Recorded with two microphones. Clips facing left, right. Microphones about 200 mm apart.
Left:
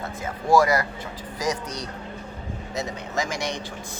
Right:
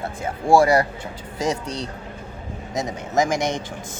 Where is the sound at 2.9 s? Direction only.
50° right (ahead or behind).